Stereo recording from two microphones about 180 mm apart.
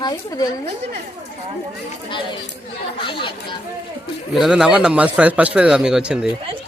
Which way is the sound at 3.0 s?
25° left (ahead or behind).